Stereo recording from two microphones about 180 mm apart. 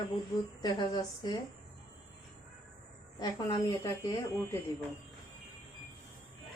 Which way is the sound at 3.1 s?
20° left (ahead or behind).